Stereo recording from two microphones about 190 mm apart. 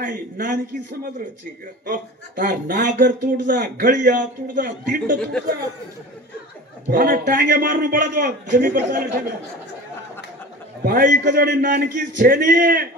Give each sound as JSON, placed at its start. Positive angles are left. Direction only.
{"t": 0.0, "sound": "speech", "side_deg": -45}
{"t": 1.9, "sound": "speech", "side_deg": -50}
{"t": 6.9, "sound": "speech", "side_deg": -50}
{"t": 10.8, "sound": "speech", "side_deg": -50}